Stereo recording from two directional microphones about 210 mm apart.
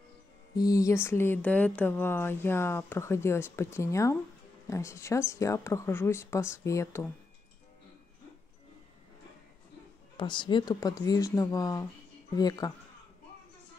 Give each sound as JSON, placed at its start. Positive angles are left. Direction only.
{"t": 0.6, "sound": "speech", "side_deg": 15}
{"t": 10.1, "sound": "speech", "side_deg": 20}